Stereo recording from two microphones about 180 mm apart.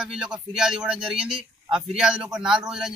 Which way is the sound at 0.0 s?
5° right (ahead or behind).